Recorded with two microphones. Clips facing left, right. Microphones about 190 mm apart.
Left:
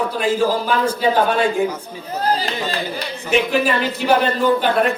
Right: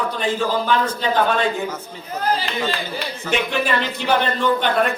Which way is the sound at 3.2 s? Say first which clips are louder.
Left 4 dB; 5° left (ahead or behind).